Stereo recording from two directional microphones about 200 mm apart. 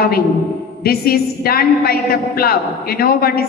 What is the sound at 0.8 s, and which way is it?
A woman's voice, 50° left (ahead or behind).